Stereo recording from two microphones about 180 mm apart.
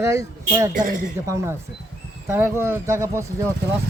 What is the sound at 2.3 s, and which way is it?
A man's voice, 15° right (ahead or behind).